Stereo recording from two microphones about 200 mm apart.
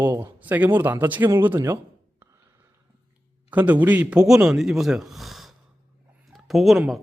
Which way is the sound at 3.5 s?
10° right (ahead or behind).